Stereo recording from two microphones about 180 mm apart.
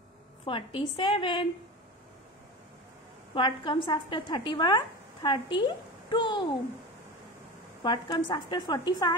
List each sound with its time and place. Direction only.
0.5 s a woman's voice: 30° left (ahead or behind)
3.3 s a woman's voice: 25° left (ahead or behind)
7.8 s a woman's voice: 25° left (ahead or behind)